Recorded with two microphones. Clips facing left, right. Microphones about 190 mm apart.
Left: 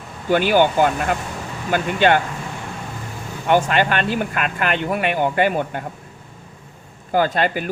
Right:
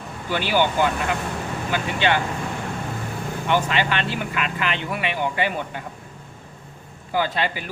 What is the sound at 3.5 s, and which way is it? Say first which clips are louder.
Speech: left 5 dB; 50° left (ahead or behind).